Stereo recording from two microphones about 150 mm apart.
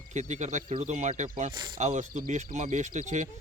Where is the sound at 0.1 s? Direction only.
55° right (ahead or behind).